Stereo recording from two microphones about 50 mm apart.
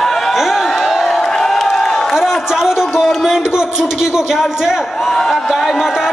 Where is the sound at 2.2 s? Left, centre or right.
Centre.